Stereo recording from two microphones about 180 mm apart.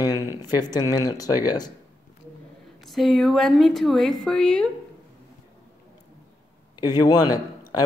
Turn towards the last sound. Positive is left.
turn(degrees=20)  # may be behind; listen again after turning